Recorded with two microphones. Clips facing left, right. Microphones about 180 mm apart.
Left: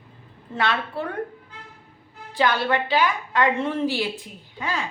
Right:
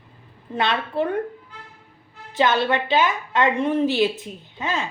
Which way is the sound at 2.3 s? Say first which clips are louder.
Right 2 dB; 20° right (ahead or behind).